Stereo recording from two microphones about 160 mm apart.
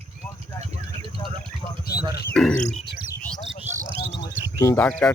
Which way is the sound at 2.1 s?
80° left.